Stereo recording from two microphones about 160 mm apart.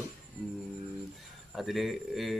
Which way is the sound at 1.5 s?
Centre (ahead or behind).